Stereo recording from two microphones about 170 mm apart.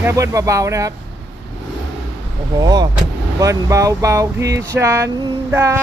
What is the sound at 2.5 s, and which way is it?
Speech, 25° right (ahead or behind).